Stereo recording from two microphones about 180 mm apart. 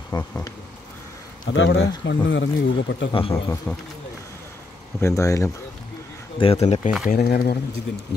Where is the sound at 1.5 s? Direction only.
90° left.